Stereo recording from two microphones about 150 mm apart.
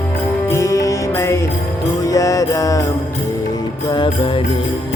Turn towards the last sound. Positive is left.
turn(degrees=30)  # may be behind; listen again after turning